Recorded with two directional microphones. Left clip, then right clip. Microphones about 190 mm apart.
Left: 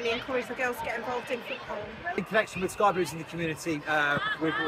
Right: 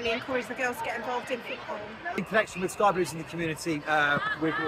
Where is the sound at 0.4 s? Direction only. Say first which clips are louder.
Even; 10° left (ahead or behind).